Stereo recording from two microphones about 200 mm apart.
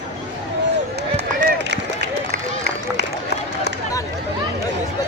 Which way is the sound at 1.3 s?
60° right (ahead or behind).